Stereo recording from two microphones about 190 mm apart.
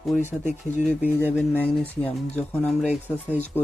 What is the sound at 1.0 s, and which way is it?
Speech, 10° right (ahead or behind).